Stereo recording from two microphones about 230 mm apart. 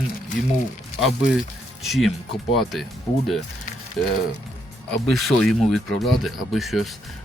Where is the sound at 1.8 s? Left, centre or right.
Centre.